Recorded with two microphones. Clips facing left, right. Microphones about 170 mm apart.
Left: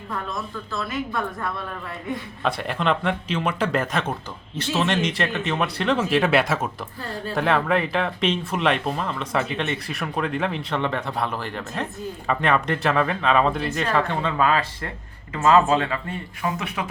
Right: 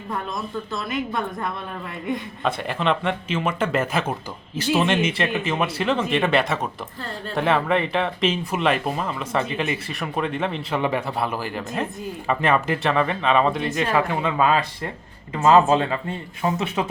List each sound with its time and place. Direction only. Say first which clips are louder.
0.7 s speech: even; 20° right (ahead or behind)
2.4 s speech: left 1 dB; centre (ahead or behind)
13.9 s speech: right 1 dB; 10° right (ahead or behind); by 16.8 s 25° right (ahead or behind)